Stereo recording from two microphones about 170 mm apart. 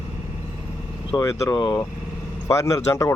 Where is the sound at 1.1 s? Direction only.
20° left (ahead or behind).